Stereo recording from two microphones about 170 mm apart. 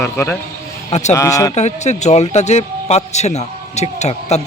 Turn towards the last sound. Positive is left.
turn(degrees=40)  # may be behind; listen again after turning